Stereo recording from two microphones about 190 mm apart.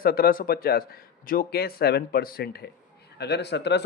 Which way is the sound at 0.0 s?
50° left (ahead or behind).